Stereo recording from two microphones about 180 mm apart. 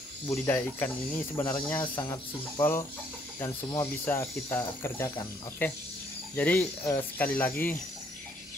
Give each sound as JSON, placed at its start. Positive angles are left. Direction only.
{"t": 0.3, "sound": "speech", "side_deg": 10}
{"t": 1.3, "sound": "speech", "side_deg": 20}
{"t": 2.6, "sound": "speech", "side_deg": 15}